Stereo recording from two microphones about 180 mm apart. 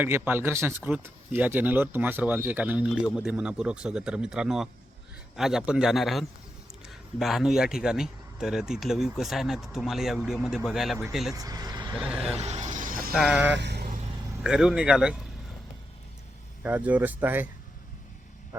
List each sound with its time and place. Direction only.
0.0 s speech: 10° right (ahead or behind)
11.3 s vehicle: 20° right (ahead or behind)
11.9 s speech: 5° right (ahead or behind)
12.3 s vehicle: 40° right (ahead or behind)
13.1 s speech: 5° right (ahead or behind)
13.5 s vehicle: 70° right (ahead or behind)
14.4 s speech: 5° right (ahead or behind)
16.6 s speech: 10° right (ahead or behind)